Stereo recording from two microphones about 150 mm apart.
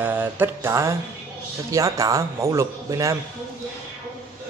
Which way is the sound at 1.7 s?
20° right (ahead or behind).